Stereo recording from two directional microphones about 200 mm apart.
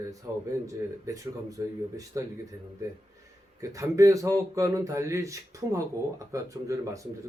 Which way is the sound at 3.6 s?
15° right (ahead or behind).